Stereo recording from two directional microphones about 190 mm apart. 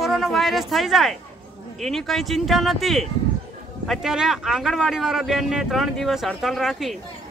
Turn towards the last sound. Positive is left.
turn(degrees=0)  # may be behind; listen again after turning